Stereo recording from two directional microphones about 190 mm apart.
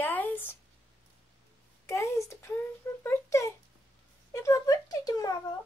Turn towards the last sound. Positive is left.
turn(degrees=20)  # may be behind; listen again after turning